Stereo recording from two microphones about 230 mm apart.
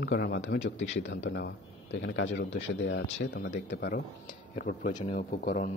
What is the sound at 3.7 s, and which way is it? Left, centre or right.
A man's voice, left.